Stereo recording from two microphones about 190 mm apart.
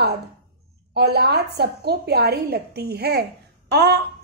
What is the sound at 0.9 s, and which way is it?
A woman's voice, 60° right (ahead or behind).